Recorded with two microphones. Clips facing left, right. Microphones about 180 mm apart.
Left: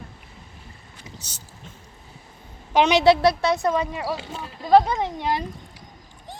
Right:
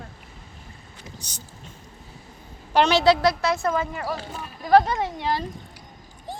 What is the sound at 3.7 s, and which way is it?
Speech, centre (ahead or behind).